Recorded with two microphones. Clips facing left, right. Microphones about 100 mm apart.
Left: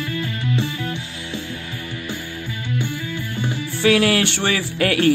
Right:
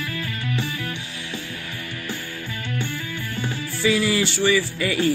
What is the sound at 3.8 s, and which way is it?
Music, 70° left (ahead or behind).